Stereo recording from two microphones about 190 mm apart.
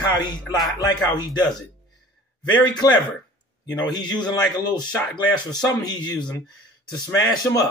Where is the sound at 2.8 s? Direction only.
20° left (ahead or behind).